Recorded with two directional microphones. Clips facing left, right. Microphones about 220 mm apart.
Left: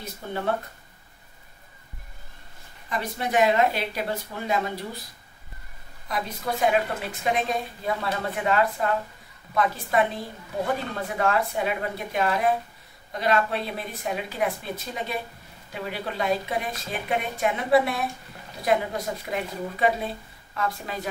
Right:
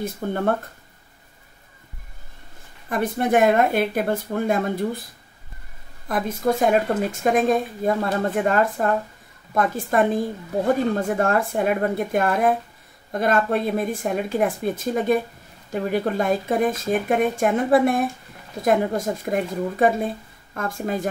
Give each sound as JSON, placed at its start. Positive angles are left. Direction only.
{"t": 0.0, "sound": "speech", "side_deg": -50}
{"t": 2.9, "sound": "speech", "side_deg": -55}
{"t": 6.0, "sound": "speech", "side_deg": -50}